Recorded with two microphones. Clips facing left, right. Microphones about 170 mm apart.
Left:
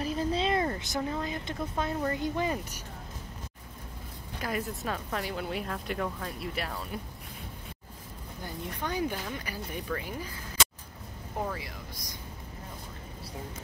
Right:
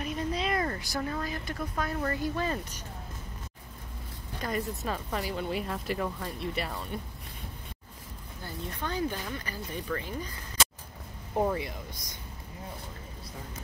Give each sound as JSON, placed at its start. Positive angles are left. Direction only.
{"t": 0.0, "sound": "speech", "side_deg": 30}
{"t": 4.4, "sound": "speech", "side_deg": 5}
{"t": 8.4, "sound": "speech", "side_deg": 15}
{"t": 11.3, "sound": "speech", "side_deg": -25}